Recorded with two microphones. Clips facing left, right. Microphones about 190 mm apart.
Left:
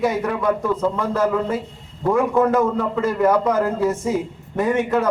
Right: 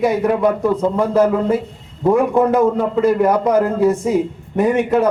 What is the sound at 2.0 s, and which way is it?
A man's voice, 15° right (ahead or behind).